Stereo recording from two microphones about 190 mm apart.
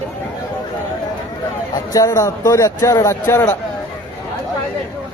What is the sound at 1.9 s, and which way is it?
A man's voice, 20° left (ahead or behind).